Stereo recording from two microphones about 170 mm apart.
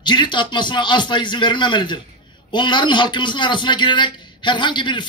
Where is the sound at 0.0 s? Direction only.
25° left (ahead or behind).